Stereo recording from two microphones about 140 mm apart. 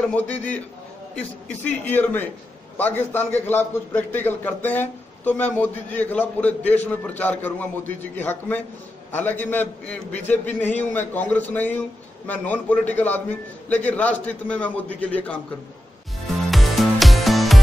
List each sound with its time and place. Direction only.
0.1 s a man's voice: 10° left (ahead or behind)
1.9 s a man's voice: 15° left (ahead or behind)
16.4 s music: centre (ahead or behind)